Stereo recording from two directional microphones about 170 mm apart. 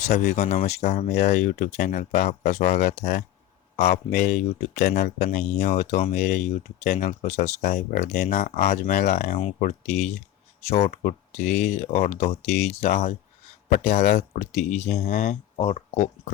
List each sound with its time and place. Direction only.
0.1 s speech: 70° left (ahead or behind)
0.6 s speech: 40° left (ahead or behind)
2.7 s speech: 65° left (ahead or behind)
3.8 s speech: 40° left (ahead or behind); by 5.5 s 60° left (ahead or behind)
5.6 s speech: 45° left (ahead or behind)
6.1 s speech: 55° left (ahead or behind)
7.6 s speech: 55° left (ahead or behind)
8.3 s speech: 45° left (ahead or behind)
15.5 s speech: 35° left (ahead or behind)